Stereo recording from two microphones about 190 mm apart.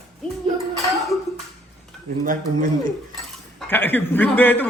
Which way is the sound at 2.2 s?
45° right (ahead or behind).